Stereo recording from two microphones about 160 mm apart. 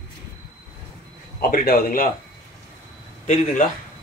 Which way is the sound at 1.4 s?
70° left (ahead or behind).